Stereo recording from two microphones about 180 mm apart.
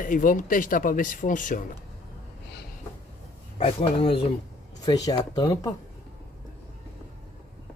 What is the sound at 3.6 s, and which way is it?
Chopping, 35° left (ahead or behind).